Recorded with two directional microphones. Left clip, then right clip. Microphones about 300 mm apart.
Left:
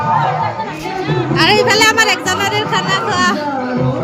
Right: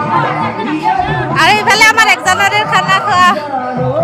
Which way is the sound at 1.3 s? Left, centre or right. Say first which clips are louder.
Right 3 dB; centre.